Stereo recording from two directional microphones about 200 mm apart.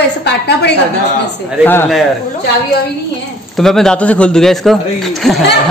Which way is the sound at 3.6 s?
Centre (ahead or behind).